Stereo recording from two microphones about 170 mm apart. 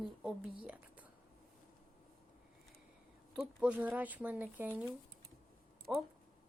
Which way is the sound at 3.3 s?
5° right (ahead or behind).